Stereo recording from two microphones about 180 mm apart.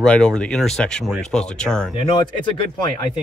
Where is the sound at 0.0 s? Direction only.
5° left (ahead or behind).